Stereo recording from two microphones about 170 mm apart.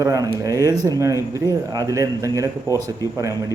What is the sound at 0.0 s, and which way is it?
A man's voice, 20° right (ahead or behind).